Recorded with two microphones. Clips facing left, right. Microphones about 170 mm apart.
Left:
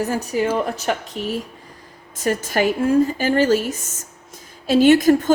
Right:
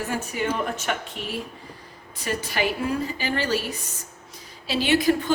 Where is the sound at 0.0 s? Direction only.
40° left (ahead or behind).